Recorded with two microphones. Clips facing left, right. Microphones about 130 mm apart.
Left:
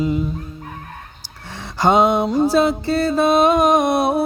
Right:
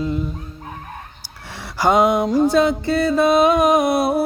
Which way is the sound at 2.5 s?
5° left (ahead or behind).